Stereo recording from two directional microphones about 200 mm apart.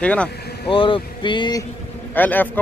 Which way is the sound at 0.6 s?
25° left (ahead or behind).